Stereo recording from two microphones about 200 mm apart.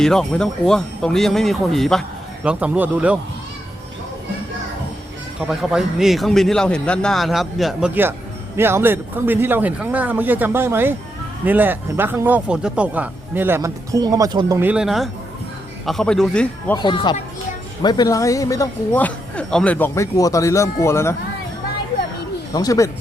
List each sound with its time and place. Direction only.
0.0 s speech: 5° left (ahead or behind)
5.5 s speech: centre (ahead or behind); by 14.6 s 20° right (ahead or behind)
14.6 s speech: 5° right (ahead or behind)
16.7 s speech: 20° left (ahead or behind)
22.5 s speech: 15° left (ahead or behind)